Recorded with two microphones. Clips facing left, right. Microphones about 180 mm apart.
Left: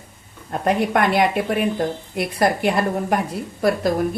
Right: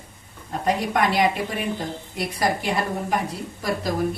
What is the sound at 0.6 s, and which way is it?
Speech, 60° left (ahead or behind).